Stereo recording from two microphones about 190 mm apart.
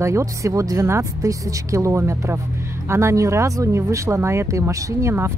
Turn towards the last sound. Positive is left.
turn(degrees=-15)  # may be behind; listen again after turning